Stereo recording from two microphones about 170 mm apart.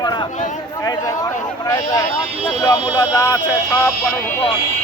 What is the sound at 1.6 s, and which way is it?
Speech, 20° left (ahead or behind).